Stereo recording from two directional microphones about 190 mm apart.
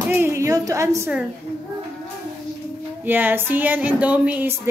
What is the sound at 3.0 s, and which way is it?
Speech, 10° right (ahead or behind).